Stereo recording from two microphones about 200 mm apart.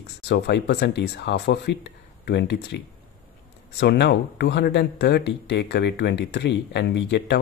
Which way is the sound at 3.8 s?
55° left (ahead or behind).